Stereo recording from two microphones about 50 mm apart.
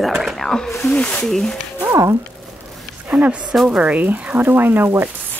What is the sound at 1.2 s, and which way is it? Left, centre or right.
Speech, centre.